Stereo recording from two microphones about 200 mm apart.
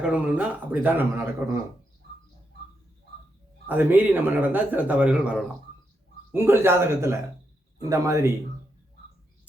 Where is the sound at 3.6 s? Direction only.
10° right (ahead or behind).